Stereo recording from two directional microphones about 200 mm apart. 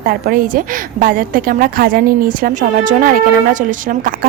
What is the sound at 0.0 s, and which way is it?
A woman's voice, 45° right (ahead or behind).